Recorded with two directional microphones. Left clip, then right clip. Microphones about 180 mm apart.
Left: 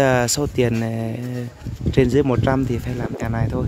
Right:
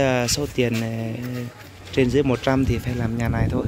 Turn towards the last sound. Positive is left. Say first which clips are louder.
# even
turn(degrees=10)  # may be behind; listen again after turning